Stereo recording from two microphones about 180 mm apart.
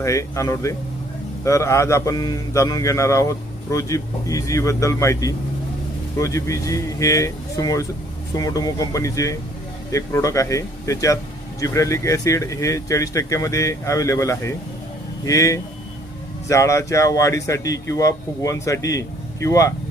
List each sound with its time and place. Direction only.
0.0 s a man's voice: 15° left (ahead or behind)